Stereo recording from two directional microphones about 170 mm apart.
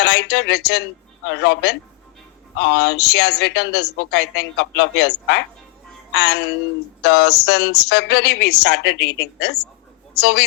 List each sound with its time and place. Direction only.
0.0 s speech: 80° left
1.2 s a woman's voice: 90° left; by 10.4 s 75° left (ahead or behind)